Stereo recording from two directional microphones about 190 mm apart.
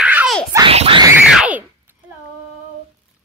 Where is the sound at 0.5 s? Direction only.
30° right (ahead or behind).